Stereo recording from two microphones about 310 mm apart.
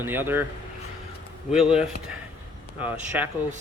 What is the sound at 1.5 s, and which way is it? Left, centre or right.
Speech, centre.